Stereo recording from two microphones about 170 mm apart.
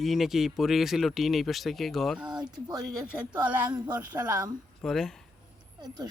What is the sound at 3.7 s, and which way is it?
Speech, 25° right (ahead or behind).